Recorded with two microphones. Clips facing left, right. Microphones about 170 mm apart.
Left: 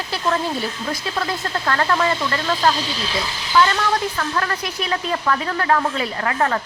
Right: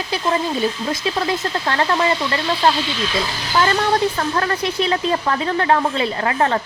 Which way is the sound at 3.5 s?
35° right (ahead or behind).